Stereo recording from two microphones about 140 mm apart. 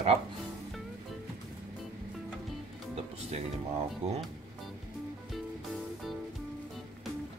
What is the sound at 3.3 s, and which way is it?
Speech, 50° right (ahead or behind).